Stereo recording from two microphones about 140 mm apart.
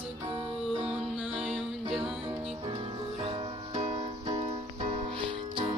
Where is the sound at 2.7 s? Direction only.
45° right (ahead or behind).